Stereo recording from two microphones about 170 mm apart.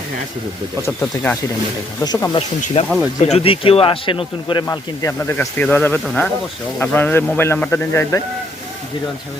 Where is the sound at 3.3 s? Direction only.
35° left (ahead or behind).